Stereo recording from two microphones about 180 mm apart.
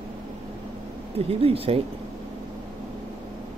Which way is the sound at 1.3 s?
30° right (ahead or behind).